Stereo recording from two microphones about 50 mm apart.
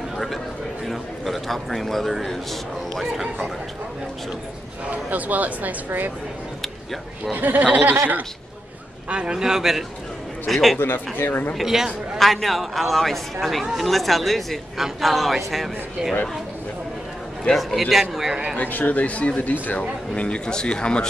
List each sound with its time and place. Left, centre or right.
0.8 s a man's voice: centre
5.1 s speech: right
6.6 s a sound: centre
7.3 s speech: right
9.1 s a man's voice: centre
10.8 s speech: left
11.5 s a man's voice: centre
12.2 s a man's voice: centre
17.6 s a man's voice: centre
18.6 s speech: left